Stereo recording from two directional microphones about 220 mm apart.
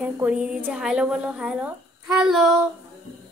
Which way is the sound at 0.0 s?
5° right (ahead or behind).